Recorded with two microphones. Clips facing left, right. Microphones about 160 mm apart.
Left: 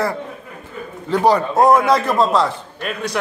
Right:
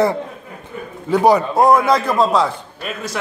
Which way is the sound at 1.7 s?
Centre (ahead or behind).